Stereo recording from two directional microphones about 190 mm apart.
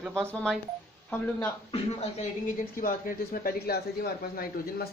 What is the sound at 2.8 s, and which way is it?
Speech, 50° left (ahead or behind).